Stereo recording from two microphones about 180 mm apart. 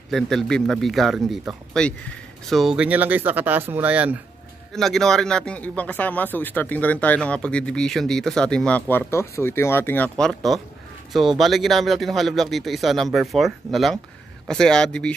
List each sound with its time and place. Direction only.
0.1 s a man's voice: centre (ahead or behind)
4.7 s a man's voice: centre (ahead or behind)